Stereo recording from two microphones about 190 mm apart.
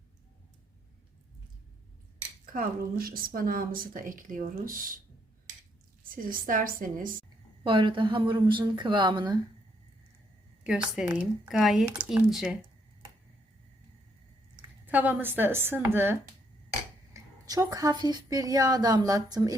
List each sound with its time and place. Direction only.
2.5 s speech: 50° right (ahead or behind)
6.2 s speech: 45° right (ahead or behind)
7.6 s a woman's voice: 25° right (ahead or behind)
10.6 s speech: 5° right (ahead or behind)
14.8 s a woman's voice: 10° right (ahead or behind)
17.2 s a woman's voice: 20° right (ahead or behind)